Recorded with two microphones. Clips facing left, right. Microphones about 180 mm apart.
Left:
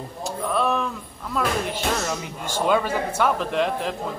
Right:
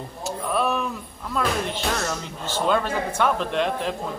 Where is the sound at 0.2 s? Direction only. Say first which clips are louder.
Left 1 dB; 5° right (ahead or behind).